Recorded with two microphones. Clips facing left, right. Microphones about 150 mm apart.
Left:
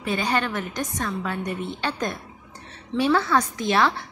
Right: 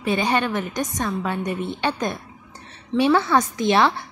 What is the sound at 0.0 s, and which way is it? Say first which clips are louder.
A woman's voice: right 3 dB; 20° right (ahead or behind).